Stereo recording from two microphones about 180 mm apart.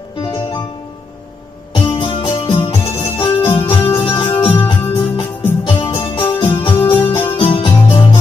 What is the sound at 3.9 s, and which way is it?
Music, 30° left (ahead or behind).